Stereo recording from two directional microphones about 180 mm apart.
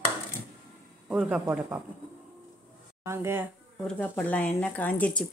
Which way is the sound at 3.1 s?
15° right (ahead or behind).